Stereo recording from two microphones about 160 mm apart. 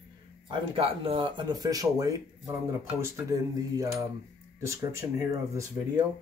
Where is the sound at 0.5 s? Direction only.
35° right (ahead or behind).